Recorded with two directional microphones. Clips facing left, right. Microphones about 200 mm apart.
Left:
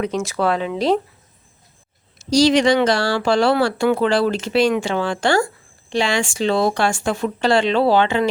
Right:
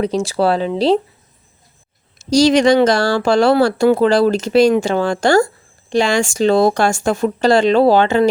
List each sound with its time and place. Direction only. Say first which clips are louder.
0.0 s speech: right 4 dB; 35° right (ahead or behind)
2.1 s speech: right 3 dB; 45° right (ahead or behind)